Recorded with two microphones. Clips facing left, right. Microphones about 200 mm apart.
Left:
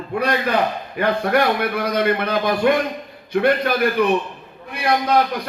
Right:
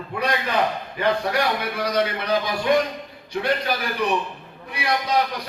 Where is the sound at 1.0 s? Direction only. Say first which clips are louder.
Left 4 dB; 55° left (ahead or behind).